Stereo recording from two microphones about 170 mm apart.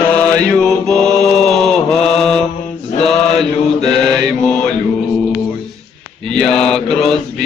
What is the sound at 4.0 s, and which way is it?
Mantra, centre (ahead or behind).